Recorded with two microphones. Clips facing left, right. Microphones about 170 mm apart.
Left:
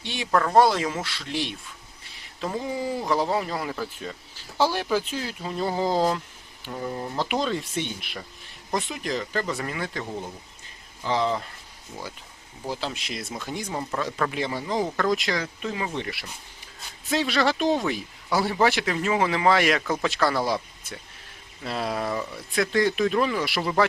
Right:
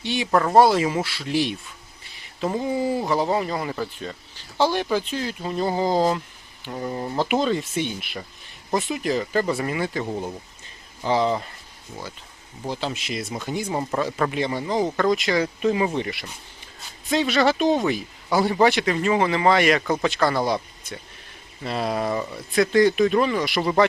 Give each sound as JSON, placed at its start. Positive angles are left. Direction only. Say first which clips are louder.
{"t": 0.0, "sound": "speech", "louder": "right 7 dB", "side_deg": 0}
{"t": 0.3, "sound": "speech", "louder": "right 3 dB", "side_deg": -15}
{"t": 2.0, "sound": "a sound", "louder": "right 5 dB", "side_deg": 0}
{"t": 2.5, "sound": "speech", "louder": "right 5 dB", "side_deg": -5}
{"t": 11.1, "sound": "speech", "louder": "right 3 dB", "side_deg": -5}
{"t": 12.6, "sound": "speech", "louder": "right 3 dB", "side_deg": 5}
{"t": 15.4, "sound": "speech", "louder": "right 9 dB", "side_deg": -15}
{"t": 16.0, "sound": "speech", "louder": "right 4 dB", "side_deg": 0}
{"t": 21.6, "sound": "speech", "louder": "right 3 dB", "side_deg": 0}